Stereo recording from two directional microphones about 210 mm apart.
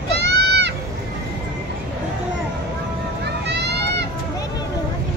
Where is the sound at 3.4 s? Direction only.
55° right (ahead or behind).